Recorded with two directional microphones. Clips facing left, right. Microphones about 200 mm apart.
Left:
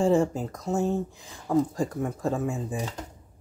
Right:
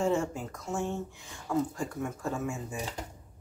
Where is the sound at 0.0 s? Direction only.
35° left (ahead or behind).